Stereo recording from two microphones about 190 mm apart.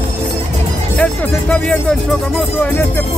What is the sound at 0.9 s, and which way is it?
Speech, 10° left (ahead or behind).